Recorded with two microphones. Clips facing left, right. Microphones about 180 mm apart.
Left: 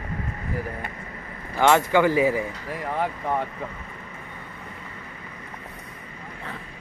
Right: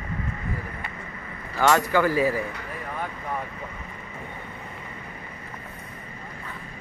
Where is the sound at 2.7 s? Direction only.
90° left.